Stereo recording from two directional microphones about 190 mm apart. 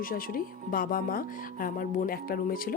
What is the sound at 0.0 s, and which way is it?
Speech, 50° left (ahead or behind).